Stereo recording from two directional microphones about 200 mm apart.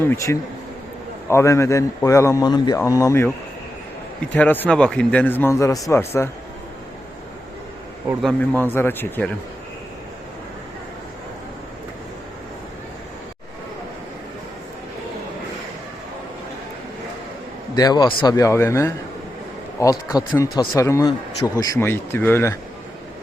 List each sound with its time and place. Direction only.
0.0 s a man's voice: 10° left (ahead or behind)
4.4 s a man's voice: 10° left (ahead or behind)
8.2 s a man's voice: 5° left (ahead or behind)
17.7 s a man's voice: 20° left (ahead or behind)